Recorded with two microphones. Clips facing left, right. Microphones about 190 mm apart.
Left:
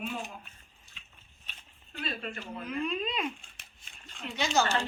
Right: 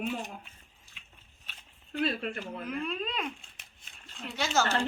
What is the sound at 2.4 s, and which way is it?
Speech, 5° right (ahead or behind).